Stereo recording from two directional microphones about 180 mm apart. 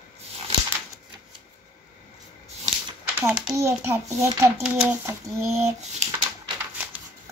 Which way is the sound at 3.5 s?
15° right (ahead or behind).